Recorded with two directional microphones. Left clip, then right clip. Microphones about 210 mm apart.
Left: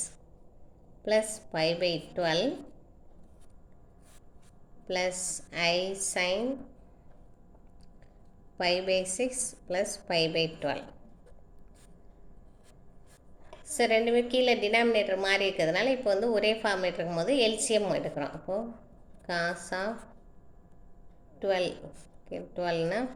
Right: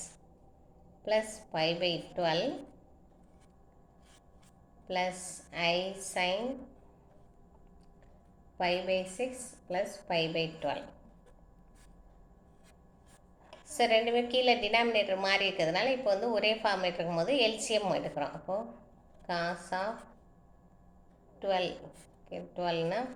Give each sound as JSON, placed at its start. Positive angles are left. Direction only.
{"t": 1.0, "sound": "a woman's voice", "side_deg": 45}
{"t": 4.9, "sound": "a woman's voice", "side_deg": 45}
{"t": 8.5, "sound": "a woman's voice", "side_deg": 45}
{"t": 13.7, "sound": "a woman's voice", "side_deg": 45}
{"t": 21.4, "sound": "a woman's voice", "side_deg": 50}